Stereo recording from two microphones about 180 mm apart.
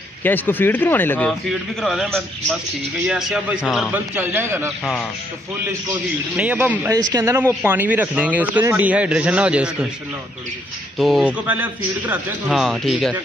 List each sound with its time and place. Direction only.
0.2 s speech: 10° left (ahead or behind)
1.5 s speech: centre (ahead or behind)
3.1 s a man's voice: 5° right (ahead or behind)
6.3 s a man's voice: 10° right (ahead or behind)
6.9 s a man's voice: 20° right (ahead or behind)
11.0 s speech: centre (ahead or behind)